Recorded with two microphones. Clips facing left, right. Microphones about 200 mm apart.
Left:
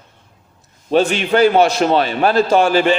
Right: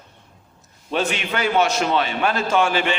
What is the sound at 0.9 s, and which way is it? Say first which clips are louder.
A man's voice: left 9 dB; 35° left (ahead or behind).